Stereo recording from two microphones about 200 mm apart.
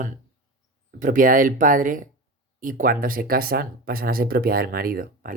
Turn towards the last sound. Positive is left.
turn(degrees=-45)  # may be behind; listen again after turning